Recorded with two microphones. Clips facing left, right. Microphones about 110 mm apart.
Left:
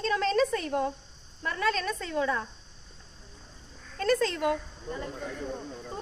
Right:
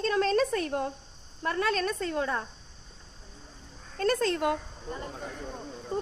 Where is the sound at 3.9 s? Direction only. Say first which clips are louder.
Even; 45° right (ahead or behind).